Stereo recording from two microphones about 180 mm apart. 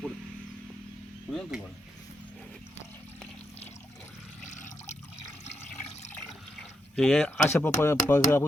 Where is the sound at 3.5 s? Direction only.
35° left (ahead or behind).